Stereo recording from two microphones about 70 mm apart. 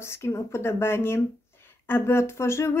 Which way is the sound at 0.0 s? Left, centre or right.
Left.